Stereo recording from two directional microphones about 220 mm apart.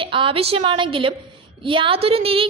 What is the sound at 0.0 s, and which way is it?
A woman's voice, 25° right (ahead or behind).